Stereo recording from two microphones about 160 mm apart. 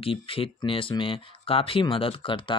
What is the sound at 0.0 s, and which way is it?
Speech, 35° left (ahead or behind).